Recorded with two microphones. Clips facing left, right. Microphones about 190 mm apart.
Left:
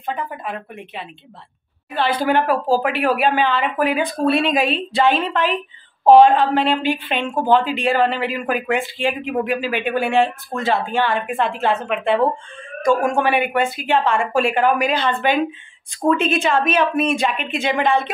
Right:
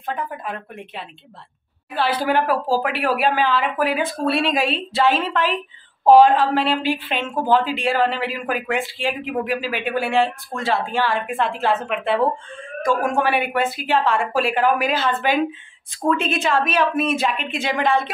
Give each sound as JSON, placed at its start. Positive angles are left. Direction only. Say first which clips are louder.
{"t": 0.0, "sound": "speech", "louder": "left 1 dB", "side_deg": 0}